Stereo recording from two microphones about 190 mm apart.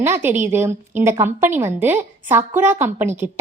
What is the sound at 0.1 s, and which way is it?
A woman's voice, 10° right (ahead or behind).